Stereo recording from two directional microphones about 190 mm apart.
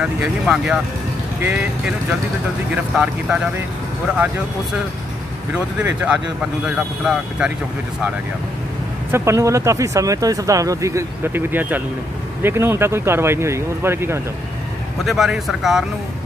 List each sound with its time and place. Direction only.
0.0 s speech: 5° right (ahead or behind)
5.5 s speech: 5° right (ahead or behind)
9.1 s speech: 15° right (ahead or behind)
15.0 s speech: centre (ahead or behind)